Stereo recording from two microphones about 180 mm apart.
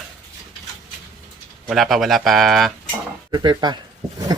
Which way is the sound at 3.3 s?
25° right (ahead or behind).